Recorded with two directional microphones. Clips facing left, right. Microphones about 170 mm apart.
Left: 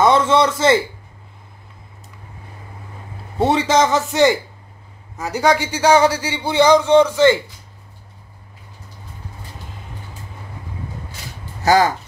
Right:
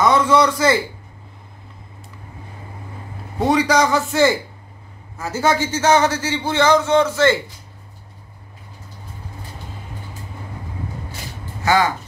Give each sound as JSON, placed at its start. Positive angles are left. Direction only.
{"t": 0.0, "sound": "a man's voice", "side_deg": 25}
{"t": 3.3, "sound": "a man's voice", "side_deg": 25}
{"t": 11.6, "sound": "speech", "side_deg": 40}